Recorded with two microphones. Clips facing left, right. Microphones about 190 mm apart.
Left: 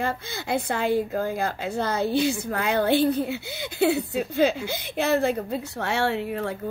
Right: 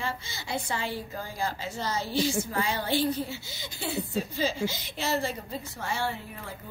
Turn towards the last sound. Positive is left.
turn(degrees=75)  # may be behind; listen again after turning